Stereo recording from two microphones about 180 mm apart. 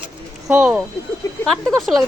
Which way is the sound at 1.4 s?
Centre (ahead or behind).